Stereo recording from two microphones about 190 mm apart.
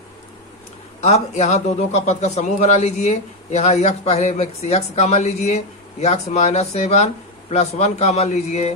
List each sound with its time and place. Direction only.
1.0 s a man's voice: 35° left (ahead or behind)